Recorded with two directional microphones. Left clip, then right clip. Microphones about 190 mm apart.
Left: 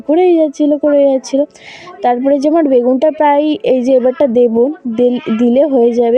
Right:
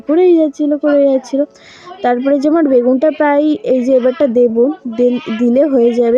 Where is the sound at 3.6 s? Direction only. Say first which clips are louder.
Left 1 dB; 20° left (ahead or behind).